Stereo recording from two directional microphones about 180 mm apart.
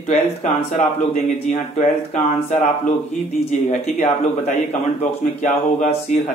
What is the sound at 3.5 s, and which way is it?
Speech, 40° left (ahead or behind).